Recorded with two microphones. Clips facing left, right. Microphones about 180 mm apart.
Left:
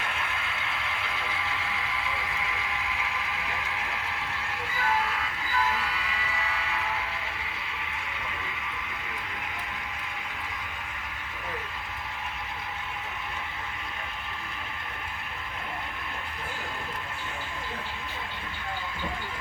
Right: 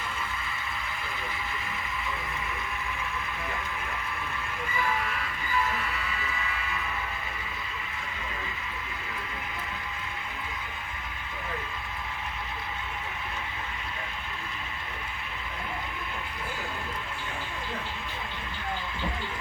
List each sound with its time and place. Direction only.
0.0 s vehicle: 75° left (ahead or behind)
4.7 s train: 90° left